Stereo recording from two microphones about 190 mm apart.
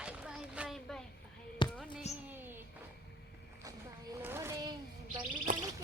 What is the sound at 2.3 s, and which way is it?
Speech, 10° right (ahead or behind).